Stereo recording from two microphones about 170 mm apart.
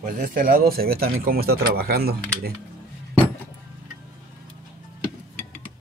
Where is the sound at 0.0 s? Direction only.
55° right (ahead or behind).